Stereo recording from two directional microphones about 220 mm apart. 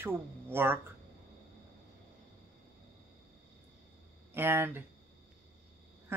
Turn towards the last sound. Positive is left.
turn(degrees=-10)  # may be behind; listen again after turning